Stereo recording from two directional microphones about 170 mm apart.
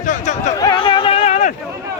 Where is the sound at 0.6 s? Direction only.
30° left (ahead or behind).